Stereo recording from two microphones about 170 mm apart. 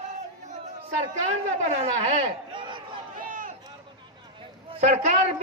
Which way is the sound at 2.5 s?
30° right (ahead or behind).